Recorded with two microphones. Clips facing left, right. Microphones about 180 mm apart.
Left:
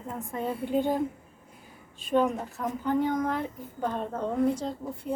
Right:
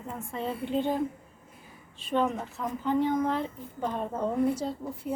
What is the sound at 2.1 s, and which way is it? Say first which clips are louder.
Speech: left 2 dB; centre (ahead or behind).